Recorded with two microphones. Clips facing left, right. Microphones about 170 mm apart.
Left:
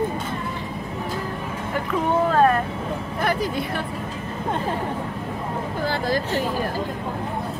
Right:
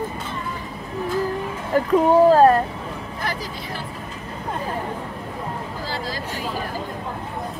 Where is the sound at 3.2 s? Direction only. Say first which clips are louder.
Left 6 dB; 55° left (ahead or behind).